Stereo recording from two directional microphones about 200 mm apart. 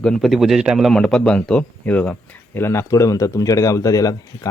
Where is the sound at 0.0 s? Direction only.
Centre (ahead or behind).